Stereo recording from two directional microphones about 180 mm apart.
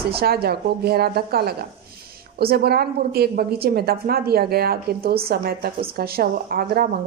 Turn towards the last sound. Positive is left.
turn(degrees=-55)  # may be behind; listen again after turning